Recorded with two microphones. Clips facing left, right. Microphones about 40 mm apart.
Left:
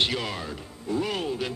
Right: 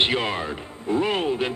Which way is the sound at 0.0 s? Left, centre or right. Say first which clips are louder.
Right 5 dB; right.